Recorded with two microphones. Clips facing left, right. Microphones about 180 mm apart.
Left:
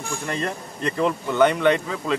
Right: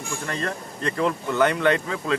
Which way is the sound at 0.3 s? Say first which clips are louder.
Left 2 dB; 10° left (ahead or behind).